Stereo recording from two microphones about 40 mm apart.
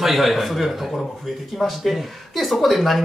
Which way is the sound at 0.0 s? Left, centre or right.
Centre.